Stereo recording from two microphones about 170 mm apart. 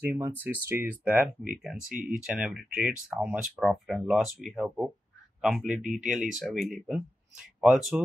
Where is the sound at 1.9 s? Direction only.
50° right (ahead or behind).